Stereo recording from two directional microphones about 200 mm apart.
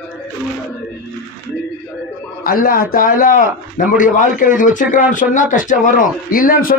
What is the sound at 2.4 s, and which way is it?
A man's voice, 45° left (ahead or behind).